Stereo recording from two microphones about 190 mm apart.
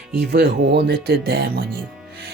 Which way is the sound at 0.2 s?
60° right (ahead or behind).